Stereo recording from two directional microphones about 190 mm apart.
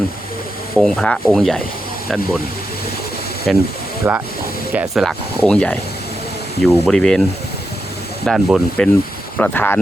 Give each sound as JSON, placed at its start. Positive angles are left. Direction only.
{"t": 0.8, "sound": "rub", "side_deg": 0}
{"t": 2.0, "sound": "speech", "side_deg": -5}
{"t": 3.5, "sound": "rub", "side_deg": 0}
{"t": 4.0, "sound": "speech", "side_deg": -10}
{"t": 5.0, "sound": "rub", "side_deg": 5}
{"t": 9.4, "sound": "speech", "side_deg": 10}